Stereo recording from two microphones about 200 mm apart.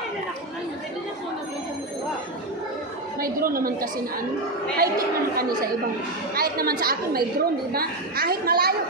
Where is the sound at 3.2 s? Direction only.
45° right (ahead or behind).